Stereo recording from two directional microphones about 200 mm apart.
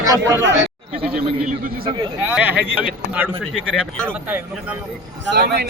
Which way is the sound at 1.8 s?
25° right (ahead or behind).